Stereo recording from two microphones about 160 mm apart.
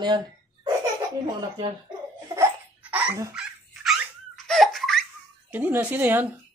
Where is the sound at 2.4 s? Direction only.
10° right (ahead or behind).